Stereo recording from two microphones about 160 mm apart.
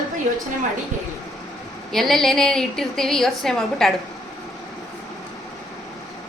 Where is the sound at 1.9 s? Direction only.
Centre (ahead or behind).